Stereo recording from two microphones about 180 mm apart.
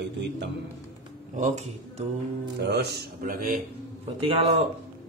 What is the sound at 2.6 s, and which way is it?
Speech, 65° right (ahead or behind).